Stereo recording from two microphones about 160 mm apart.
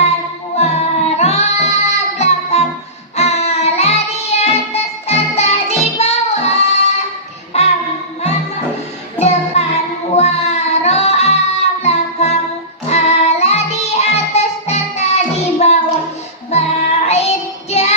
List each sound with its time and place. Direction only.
0.5 s music: 45° left (ahead or behind)
7.5 s child singing: 40° left (ahead or behind)
9.1 s child singing: 45° left (ahead or behind)
11.8 s music: 40° left (ahead or behind)
17.1 s child singing: 40° left (ahead or behind)